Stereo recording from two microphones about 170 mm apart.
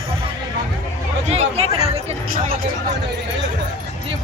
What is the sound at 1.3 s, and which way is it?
Speech, 40° right (ahead or behind).